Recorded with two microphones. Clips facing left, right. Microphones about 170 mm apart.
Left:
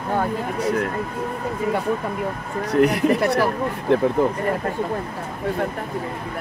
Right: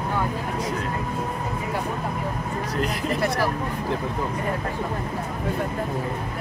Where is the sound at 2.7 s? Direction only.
60° left (ahead or behind).